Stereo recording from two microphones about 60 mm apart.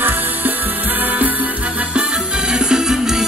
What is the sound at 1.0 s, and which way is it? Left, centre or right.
Music, right.